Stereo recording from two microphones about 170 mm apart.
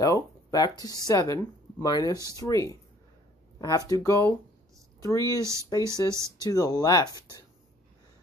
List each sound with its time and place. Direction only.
0.0 s speech: 20° left (ahead or behind)
5.3 s speech: 15° right (ahead or behind)
6.4 s speech: 20° left (ahead or behind)